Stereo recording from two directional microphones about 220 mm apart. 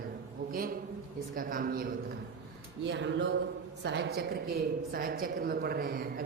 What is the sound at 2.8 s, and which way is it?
A woman's voice, 55° right (ahead or behind).